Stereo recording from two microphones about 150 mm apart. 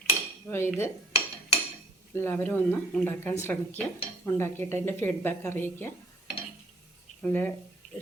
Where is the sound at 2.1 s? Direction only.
15° left (ahead or behind).